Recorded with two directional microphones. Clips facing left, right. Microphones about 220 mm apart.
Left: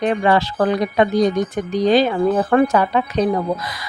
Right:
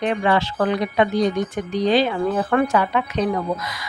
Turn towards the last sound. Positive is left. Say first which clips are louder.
# left 3 dB
turn(degrees=35)  # may be behind; listen again after turning